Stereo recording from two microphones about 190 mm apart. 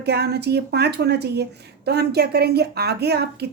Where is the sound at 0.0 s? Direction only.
60° right (ahead or behind).